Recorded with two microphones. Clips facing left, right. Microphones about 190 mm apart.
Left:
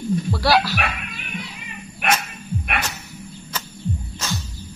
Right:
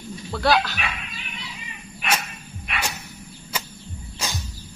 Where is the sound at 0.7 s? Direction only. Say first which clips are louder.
Left 5 dB; 60° left (ahead or behind).